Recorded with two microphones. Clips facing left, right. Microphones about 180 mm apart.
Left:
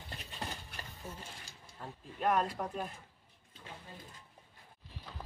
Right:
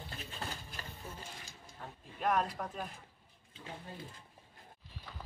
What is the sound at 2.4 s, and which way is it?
Speech, 10° left (ahead or behind).